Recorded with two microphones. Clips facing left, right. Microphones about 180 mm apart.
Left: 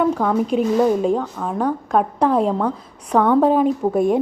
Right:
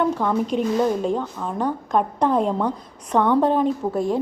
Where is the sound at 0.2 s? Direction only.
45° left (ahead or behind).